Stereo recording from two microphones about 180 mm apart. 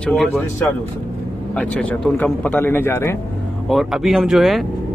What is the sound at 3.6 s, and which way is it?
Speech, centre (ahead or behind).